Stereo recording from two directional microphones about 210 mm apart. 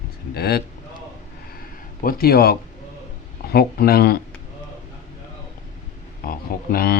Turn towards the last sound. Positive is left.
turn(degrees=45)  # may be behind; listen again after turning